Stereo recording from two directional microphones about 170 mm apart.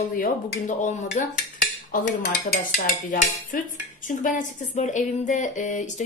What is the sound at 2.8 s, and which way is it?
Speech, 55° left (ahead or behind).